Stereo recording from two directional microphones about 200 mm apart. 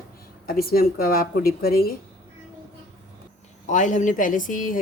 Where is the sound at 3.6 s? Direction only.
40° left (ahead or behind).